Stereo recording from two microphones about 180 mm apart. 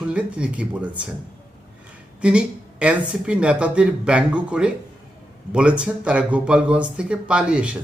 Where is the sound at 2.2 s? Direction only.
5° right (ahead or behind).